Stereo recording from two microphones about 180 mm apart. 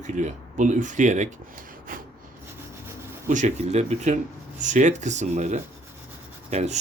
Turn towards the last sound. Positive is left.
turn(degrees=-35)  # may be behind; listen again after turning